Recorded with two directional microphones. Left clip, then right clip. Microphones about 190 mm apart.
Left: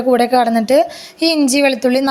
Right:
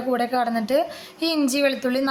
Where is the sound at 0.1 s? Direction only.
35° left (ahead or behind).